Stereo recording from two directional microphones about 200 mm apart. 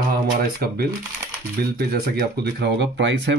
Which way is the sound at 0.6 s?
50° right (ahead or behind).